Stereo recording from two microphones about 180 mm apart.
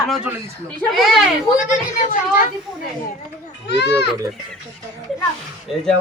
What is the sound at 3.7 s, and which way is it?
Speech, 70° left (ahead or behind).